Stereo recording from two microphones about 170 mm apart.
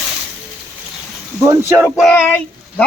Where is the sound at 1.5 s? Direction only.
15° right (ahead or behind).